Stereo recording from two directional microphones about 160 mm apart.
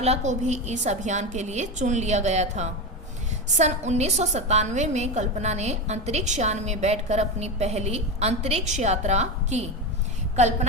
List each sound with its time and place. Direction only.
0.0 s a woman's voice: 45° right (ahead or behind)